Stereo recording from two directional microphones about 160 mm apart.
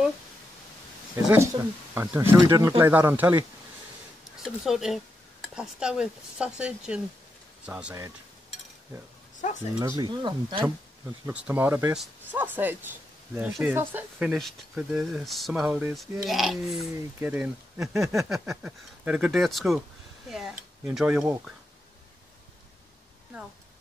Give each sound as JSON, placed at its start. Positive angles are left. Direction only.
{"t": 1.3, "sound": "speech", "side_deg": -15}
{"t": 4.4, "sound": "speech", "side_deg": 0}
{"t": 9.4, "sound": "speech", "side_deg": 50}
{"t": 9.8, "sound": "speech", "side_deg": -25}
{"t": 11.2, "sound": "speech", "side_deg": -10}